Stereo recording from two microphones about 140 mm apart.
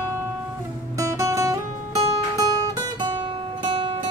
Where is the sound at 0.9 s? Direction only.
20° right (ahead or behind).